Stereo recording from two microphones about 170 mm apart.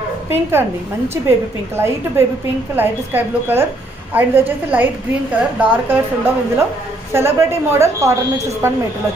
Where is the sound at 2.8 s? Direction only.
10° right (ahead or behind).